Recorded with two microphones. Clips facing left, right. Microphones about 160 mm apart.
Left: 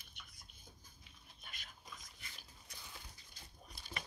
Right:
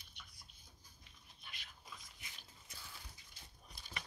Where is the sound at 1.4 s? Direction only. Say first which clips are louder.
Even; 45° left (ahead or behind).